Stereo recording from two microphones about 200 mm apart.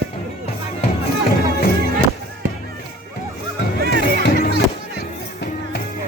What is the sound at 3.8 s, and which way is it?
Music, 50° right (ahead or behind).